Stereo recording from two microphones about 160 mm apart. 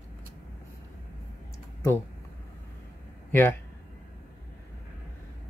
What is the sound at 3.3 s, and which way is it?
Speech, 15° left (ahead or behind).